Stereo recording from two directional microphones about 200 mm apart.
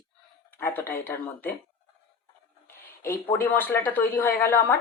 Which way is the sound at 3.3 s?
10° left (ahead or behind).